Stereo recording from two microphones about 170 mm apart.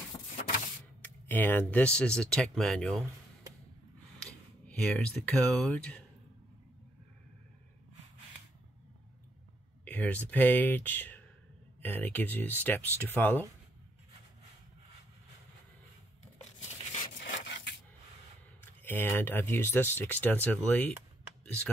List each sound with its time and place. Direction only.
0.1 s a sound: 20° left (ahead or behind)
1.0 s speech: 10° left (ahead or behind)
4.3 s speech: 5° left (ahead or behind)
9.8 s speech: 10° left (ahead or behind)
17.0 s rub: 85° left
18.8 s speech: 10° left (ahead or behind)